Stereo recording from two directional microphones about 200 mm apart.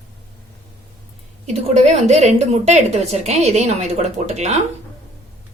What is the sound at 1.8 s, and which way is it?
Speech, 35° right (ahead or behind).